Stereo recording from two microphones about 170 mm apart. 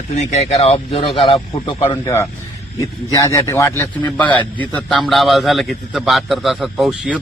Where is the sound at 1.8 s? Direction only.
15° left (ahead or behind); by 7.1 s centre (ahead or behind).